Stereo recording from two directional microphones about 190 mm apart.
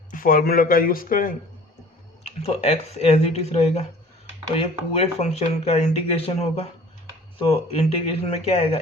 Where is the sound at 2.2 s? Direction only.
35° left (ahead or behind).